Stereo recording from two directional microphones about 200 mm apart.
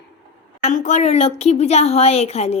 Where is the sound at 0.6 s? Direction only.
35° left (ahead or behind).